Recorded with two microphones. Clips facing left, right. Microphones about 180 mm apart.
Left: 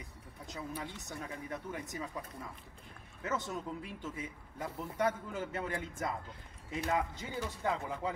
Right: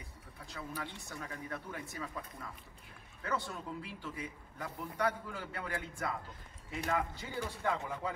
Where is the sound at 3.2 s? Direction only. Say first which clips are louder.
Left 1 dB; 20° left (ahead or behind).